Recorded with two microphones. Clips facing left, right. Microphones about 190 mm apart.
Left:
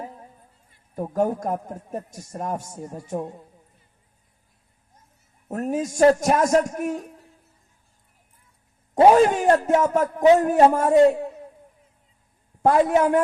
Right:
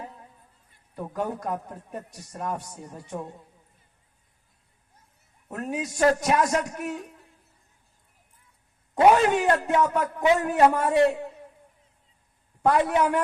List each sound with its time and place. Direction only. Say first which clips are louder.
0.9 s a man's voice: left 7 dB; 45° left (ahead or behind)
5.5 s a man's voice: left 6 dB; 45° left (ahead or behind)
9.1 s a man's voice: left 5 dB; 45° left (ahead or behind)
12.6 s a man's voice: left 4 dB; 45° left (ahead or behind)